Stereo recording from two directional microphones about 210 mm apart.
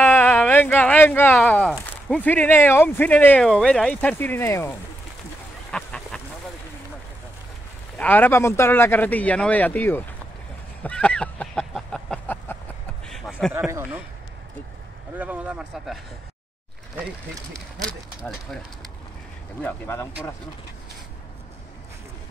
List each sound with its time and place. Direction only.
0.0 s speech: 10° left (ahead or behind)
5.7 s a sound: 5° left (ahead or behind)
8.0 s speech: 10° left (ahead or behind)
10.8 s a sound: 5° left (ahead or behind)
13.0 s speech: centre (ahead or behind)
15.1 s speech: 5° right (ahead or behind)
17.5 s speech: 5° left (ahead or behind)
19.6 s speech: 10° left (ahead or behind)